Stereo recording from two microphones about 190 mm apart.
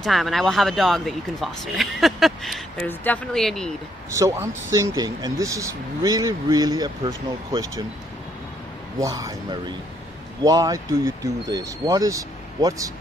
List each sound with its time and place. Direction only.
0.0 s speech: centre (ahead or behind)
4.1 s speech: 15° right (ahead or behind)
9.0 s a man's voice: 20° right (ahead or behind)